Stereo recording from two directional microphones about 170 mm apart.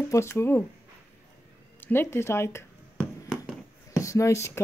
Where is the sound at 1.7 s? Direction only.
10° left (ahead or behind).